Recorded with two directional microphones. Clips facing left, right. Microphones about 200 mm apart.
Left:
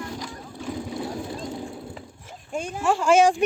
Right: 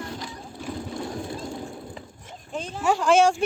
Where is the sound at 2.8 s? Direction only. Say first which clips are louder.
Left 1 dB; centre (ahead or behind).